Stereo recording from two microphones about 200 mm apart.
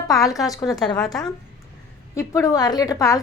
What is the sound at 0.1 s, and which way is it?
Speech, 15° left (ahead or behind).